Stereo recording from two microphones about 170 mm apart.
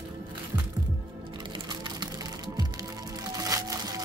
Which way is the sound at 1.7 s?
25° right (ahead or behind).